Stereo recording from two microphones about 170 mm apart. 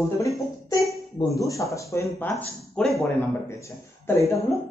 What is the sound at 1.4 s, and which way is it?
Speech, 20° left (ahead or behind).